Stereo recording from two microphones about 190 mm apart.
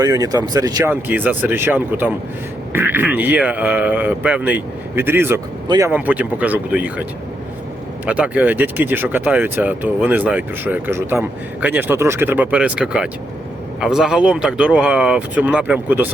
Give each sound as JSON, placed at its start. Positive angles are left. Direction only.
{"t": 0.0, "sound": "speech", "side_deg": -20}
{"t": 1.0, "sound": "speech", "side_deg": -10}
{"t": 5.9, "sound": "speech", "side_deg": -10}
{"t": 8.0, "sound": "speech", "side_deg": -5}